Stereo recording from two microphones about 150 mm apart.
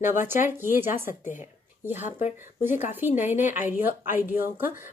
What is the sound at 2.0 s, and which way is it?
Speech, 50° left (ahead or behind).